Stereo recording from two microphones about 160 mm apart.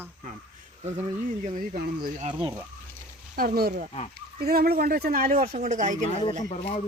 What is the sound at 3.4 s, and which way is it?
Speech, 70° right (ahead or behind).